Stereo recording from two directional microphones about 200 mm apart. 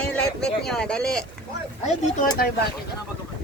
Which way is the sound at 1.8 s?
35° left (ahead or behind).